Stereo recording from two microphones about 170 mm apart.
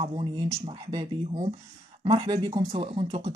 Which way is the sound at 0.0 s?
30° right (ahead or behind).